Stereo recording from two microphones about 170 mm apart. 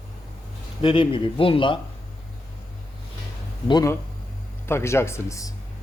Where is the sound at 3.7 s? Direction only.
25° left (ahead or behind).